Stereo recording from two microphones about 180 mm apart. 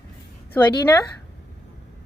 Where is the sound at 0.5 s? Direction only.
15° left (ahead or behind).